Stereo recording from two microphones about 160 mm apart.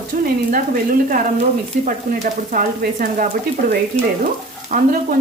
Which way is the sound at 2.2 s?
55° right (ahead or behind).